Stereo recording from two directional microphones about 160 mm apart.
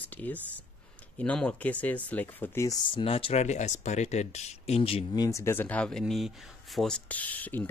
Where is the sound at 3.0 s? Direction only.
35° left (ahead or behind); by 7.7 s 10° left (ahead or behind).